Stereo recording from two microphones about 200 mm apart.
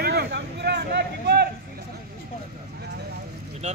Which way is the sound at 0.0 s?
55° right (ahead or behind).